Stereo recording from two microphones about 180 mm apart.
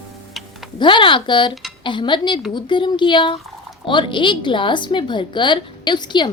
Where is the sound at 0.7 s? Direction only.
25° left (ahead or behind).